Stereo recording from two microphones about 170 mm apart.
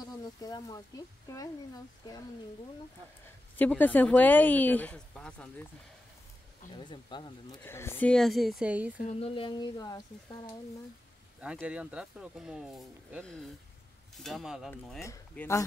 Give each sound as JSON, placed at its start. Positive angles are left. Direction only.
{"t": 0.2, "sound": "speech", "side_deg": 20}
{"t": 3.3, "sound": "a woman's voice", "side_deg": 10}
{"t": 6.7, "sound": "speech", "side_deg": 25}
{"t": 7.6, "sound": "speech", "side_deg": 15}
{"t": 8.9, "sound": "speech", "side_deg": 40}
{"t": 11.6, "sound": "speech", "side_deg": -5}
{"t": 14.7, "sound": "a woman's voice", "side_deg": 15}